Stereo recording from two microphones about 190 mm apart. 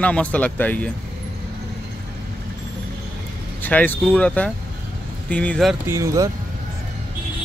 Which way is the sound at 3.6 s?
10° left (ahead or behind).